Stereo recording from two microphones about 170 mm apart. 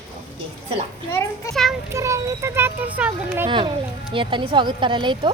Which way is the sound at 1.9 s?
20° right (ahead or behind).